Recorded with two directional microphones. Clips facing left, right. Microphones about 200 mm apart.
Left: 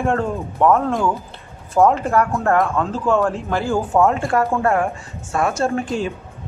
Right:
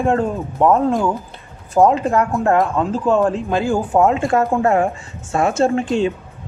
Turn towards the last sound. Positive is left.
turn(degrees=-25)  # may be behind; listen again after turning